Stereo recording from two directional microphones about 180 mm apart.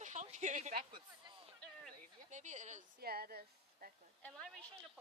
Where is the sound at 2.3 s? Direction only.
40° right (ahead or behind).